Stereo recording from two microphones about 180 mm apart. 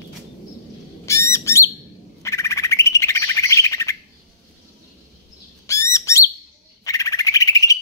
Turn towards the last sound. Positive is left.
turn(degrees=20)  # may be behind; listen again after turning